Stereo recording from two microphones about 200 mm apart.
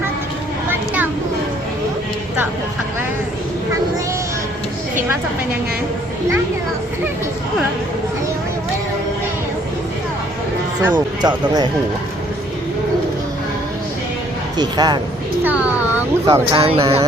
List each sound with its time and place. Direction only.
10.9 s speech: 20° right (ahead or behind)
14.6 s speech: 20° right (ahead or behind)
15.4 s speech: 5° right (ahead or behind)
16.6 s speech: 30° right (ahead or behind)